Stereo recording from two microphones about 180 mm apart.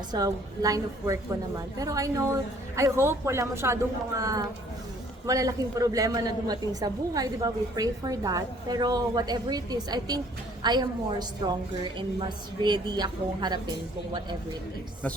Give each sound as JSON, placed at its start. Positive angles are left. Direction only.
{"t": 0.1, "sound": "a woman's voice", "side_deg": -20}
{"t": 12.6, "sound": "a man's voice", "side_deg": -25}